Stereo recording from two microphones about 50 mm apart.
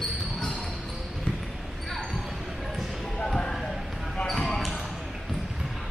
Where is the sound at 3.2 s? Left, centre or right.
Centre.